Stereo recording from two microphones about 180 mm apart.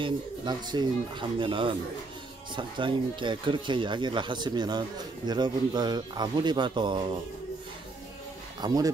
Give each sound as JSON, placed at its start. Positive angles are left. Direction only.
{"t": 0.0, "sound": "speech", "side_deg": -25}
{"t": 8.5, "sound": "speech", "side_deg": -20}